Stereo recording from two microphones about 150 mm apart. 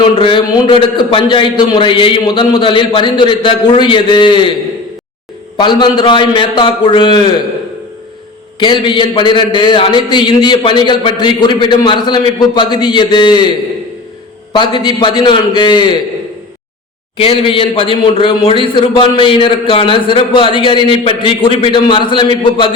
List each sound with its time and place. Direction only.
0.0 s a man's voice: 35° left (ahead or behind)
5.5 s a man's voice: 30° left (ahead or behind)
8.5 s a man's voice: 30° left (ahead or behind)
14.5 s a man's voice: 30° left (ahead or behind)
17.2 s a man's voice: 35° left (ahead or behind)